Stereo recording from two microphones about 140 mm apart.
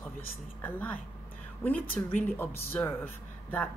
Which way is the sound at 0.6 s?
10° left (ahead or behind).